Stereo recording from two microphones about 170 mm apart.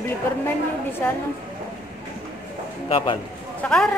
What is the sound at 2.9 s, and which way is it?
Speech, 30° left (ahead or behind).